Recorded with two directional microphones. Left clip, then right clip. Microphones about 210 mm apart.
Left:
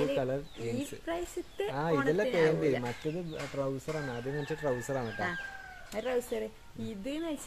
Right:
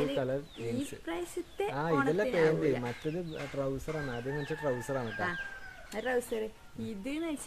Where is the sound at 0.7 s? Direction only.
15° right (ahead or behind).